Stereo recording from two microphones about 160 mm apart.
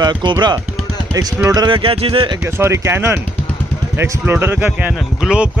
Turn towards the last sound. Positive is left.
turn(degrees=-5)  # may be behind; listen again after turning